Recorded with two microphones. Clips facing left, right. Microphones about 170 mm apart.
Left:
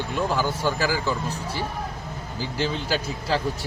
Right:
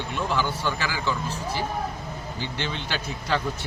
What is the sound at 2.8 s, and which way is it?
Speech, 35° left (ahead or behind).